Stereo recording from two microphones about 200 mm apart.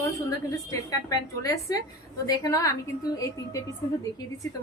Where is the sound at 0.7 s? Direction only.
15° left (ahead or behind).